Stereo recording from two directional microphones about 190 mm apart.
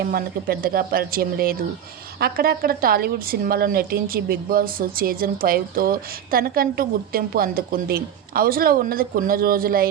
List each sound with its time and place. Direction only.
0.1 s a woman's voice: 50° right (ahead or behind)